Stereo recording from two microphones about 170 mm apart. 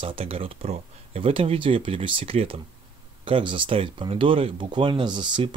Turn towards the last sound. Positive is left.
turn(degrees=-25)  # may be behind; listen again after turning